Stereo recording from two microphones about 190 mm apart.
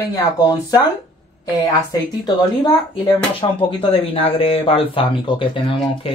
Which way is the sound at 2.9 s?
30° left (ahead or behind).